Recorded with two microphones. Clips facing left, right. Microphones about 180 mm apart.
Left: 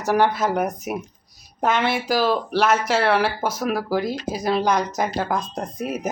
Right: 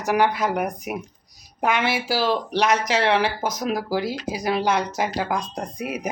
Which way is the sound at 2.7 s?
10° left (ahead or behind).